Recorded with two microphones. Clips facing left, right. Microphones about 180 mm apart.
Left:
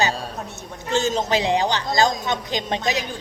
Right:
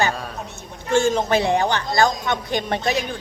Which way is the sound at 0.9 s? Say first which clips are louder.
Right 3 dB; 20° left (ahead or behind).